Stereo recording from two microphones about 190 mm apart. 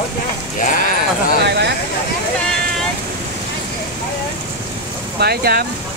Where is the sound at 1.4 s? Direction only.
60° right (ahead or behind).